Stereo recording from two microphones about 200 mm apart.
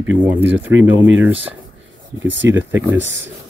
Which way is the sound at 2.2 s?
65° right (ahead or behind).